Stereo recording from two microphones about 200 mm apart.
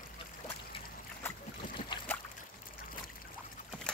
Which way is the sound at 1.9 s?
20° left (ahead or behind).